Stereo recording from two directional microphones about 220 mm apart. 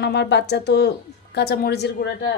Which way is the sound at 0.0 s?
50° left (ahead or behind).